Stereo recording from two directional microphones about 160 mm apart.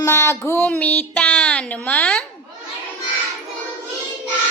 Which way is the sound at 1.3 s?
5° left (ahead or behind).